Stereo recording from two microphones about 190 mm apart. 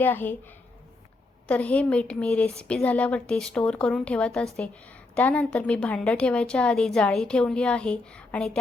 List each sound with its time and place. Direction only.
0.0 s a woman's voice: 10° left (ahead or behind)